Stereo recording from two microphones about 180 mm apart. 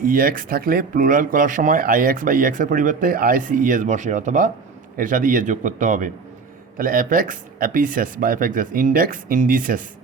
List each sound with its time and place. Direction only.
0.0 s speech: 50° right (ahead or behind)